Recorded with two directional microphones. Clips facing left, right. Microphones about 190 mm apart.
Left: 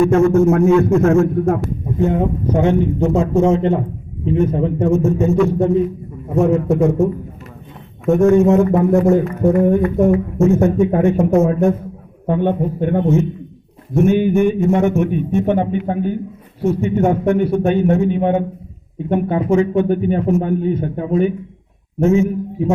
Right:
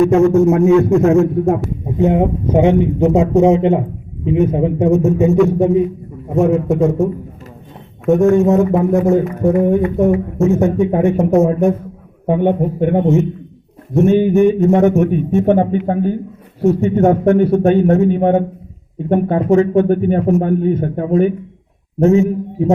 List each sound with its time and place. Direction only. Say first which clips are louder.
0.0 s speech: right 2 dB; 20° right (ahead or behind)
6.4 s speech: right 1 dB; centre (ahead or behind)
10.9 s speech: right 1 dB; 20° right (ahead or behind)
11.3 s speech: right 2 dB; centre (ahead or behind)
12.3 s speech: right 3 dB; 15° right (ahead or behind)
14.1 s a man's voice: right 4 dB; 35° right (ahead or behind)